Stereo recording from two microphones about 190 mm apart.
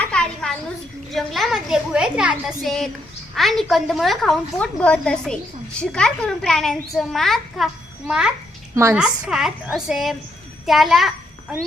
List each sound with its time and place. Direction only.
0.0 s a sound: 5° left (ahead or behind)
1.1 s a woman's voice: centre (ahead or behind)
8.7 s a woman's voice: 15° right (ahead or behind)
9.0 s a woman's voice: 5° right (ahead or behind)